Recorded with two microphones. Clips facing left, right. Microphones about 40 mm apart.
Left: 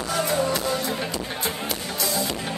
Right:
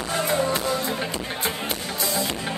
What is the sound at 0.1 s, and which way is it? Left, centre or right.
Music, right.